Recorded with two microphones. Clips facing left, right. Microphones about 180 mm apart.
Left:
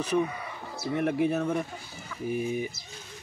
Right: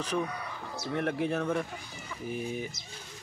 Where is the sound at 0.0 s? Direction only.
5° left (ahead or behind).